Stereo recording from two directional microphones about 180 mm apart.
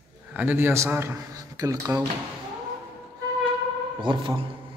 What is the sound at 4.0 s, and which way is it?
Speech, 25° right (ahead or behind).